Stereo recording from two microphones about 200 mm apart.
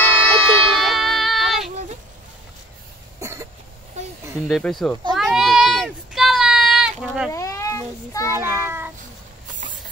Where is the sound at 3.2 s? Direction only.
15° right (ahead or behind).